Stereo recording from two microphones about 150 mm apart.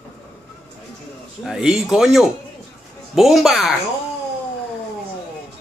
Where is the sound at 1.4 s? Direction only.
5° right (ahead or behind).